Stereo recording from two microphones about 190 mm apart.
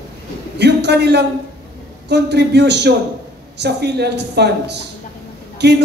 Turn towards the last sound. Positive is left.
turn(degrees=-60)  # may be behind; listen again after turning